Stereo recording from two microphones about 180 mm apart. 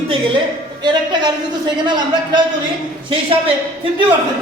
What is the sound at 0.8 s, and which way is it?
Speech, 25° right (ahead or behind).